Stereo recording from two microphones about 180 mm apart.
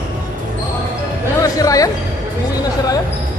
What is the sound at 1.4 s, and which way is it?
Music, 20° left (ahead or behind).